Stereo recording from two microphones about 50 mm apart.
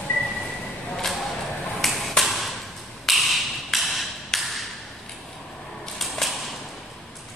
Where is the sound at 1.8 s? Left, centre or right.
Centre.